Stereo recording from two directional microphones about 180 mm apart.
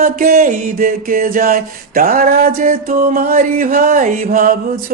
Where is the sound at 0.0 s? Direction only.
55° right (ahead or behind).